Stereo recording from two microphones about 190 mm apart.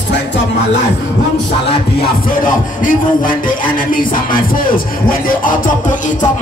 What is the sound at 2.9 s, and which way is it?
Music, 45° left (ahead or behind).